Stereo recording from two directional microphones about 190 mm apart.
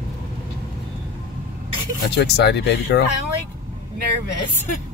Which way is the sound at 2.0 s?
60° left (ahead or behind).